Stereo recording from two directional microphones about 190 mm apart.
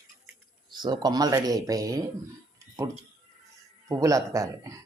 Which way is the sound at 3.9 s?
15° right (ahead or behind).